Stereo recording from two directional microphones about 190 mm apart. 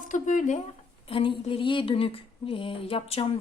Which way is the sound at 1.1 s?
30° left (ahead or behind).